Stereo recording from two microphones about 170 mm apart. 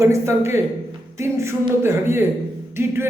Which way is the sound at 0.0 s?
15° right (ahead or behind).